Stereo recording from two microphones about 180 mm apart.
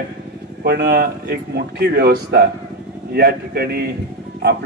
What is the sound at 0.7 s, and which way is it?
A man's voice, 65° right (ahead or behind).